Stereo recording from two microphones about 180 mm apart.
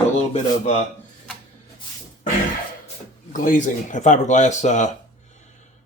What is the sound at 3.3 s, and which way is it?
Speech, 45° left (ahead or behind).